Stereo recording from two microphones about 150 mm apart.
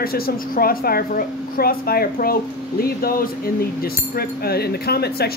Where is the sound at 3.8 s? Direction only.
90° left.